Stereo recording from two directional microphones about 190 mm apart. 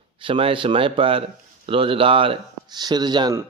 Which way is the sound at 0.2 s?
25° right (ahead or behind).